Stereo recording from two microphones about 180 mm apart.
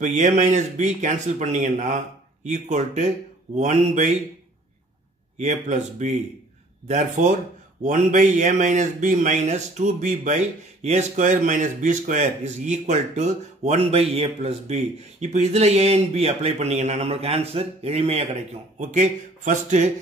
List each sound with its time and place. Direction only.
0.0 s speech: 45° right (ahead or behind)
5.4 s speech: 40° right (ahead or behind)